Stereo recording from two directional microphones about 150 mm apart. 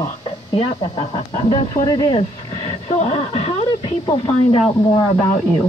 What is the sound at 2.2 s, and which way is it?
Speech, 40° left (ahead or behind).